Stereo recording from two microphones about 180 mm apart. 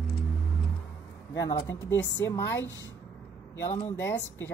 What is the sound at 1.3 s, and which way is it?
Speech, 20° left (ahead or behind).